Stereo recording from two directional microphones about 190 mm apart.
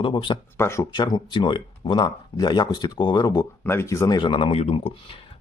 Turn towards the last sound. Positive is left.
turn(degrees=30)  # may be behind; listen again after turning